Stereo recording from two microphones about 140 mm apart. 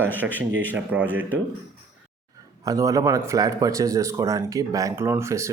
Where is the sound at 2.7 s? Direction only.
25° right (ahead or behind).